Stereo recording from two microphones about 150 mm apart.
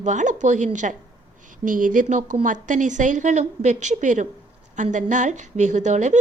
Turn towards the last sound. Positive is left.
turn(degrees=-55)  # may be behind; listen again after turning